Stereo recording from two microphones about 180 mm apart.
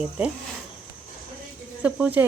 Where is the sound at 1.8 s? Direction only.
5° right (ahead or behind).